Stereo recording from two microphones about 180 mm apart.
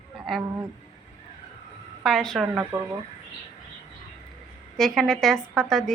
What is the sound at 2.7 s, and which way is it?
Speech, 10° right (ahead or behind).